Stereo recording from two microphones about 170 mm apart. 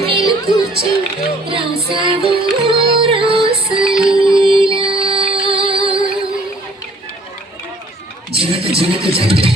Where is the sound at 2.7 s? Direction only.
30° right (ahead or behind).